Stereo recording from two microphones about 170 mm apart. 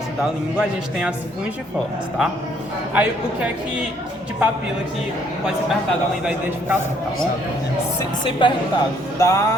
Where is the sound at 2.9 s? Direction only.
10° right (ahead or behind).